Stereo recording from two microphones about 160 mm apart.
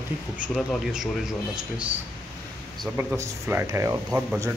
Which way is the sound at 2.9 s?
15° right (ahead or behind).